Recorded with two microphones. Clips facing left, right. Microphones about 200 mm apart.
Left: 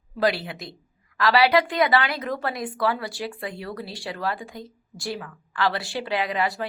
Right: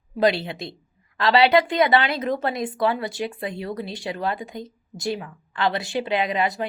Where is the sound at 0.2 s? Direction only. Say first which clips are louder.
Right 3 dB; 25° right (ahead or behind).